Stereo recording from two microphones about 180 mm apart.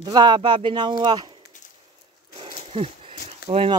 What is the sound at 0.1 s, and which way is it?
Speech, 25° right (ahead or behind).